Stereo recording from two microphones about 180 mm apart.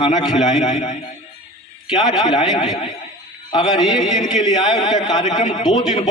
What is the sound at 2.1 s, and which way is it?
Speech, 20° left (ahead or behind).